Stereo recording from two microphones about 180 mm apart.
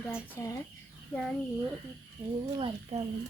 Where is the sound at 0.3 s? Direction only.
15° left (ahead or behind).